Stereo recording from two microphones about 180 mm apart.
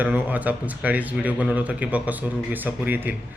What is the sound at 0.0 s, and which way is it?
Speech, 10° right (ahead or behind).